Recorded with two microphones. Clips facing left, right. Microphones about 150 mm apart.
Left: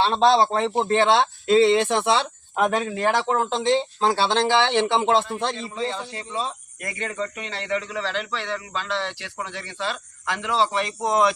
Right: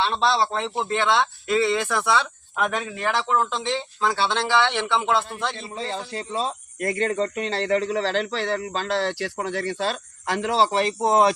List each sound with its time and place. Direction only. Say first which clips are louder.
0.0 s speech: left 4 dB; 40° left (ahead or behind)
5.5 s a man's voice: left 2 dB; 35° right (ahead or behind)